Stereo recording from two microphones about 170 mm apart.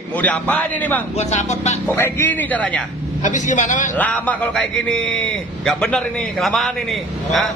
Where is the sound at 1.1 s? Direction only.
40° left (ahead or behind).